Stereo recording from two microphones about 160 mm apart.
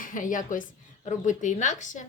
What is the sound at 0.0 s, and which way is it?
A woman's voice, 55° left (ahead or behind).